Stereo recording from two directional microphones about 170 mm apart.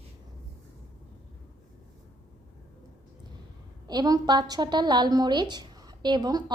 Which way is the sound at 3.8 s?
25° right (ahead or behind).